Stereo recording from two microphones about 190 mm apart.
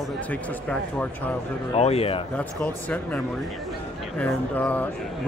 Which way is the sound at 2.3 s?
5° left (ahead or behind).